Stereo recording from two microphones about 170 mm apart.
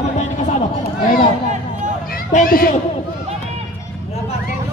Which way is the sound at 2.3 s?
55° left (ahead or behind).